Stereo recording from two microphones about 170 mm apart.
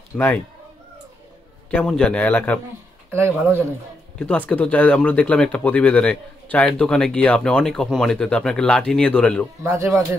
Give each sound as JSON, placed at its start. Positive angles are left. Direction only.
{"t": 1.7, "sound": "speech", "side_deg": 5}
{"t": 3.1, "sound": "speech", "side_deg": -15}
{"t": 4.2, "sound": "speech", "side_deg": 10}
{"t": 9.6, "sound": "speech", "side_deg": -15}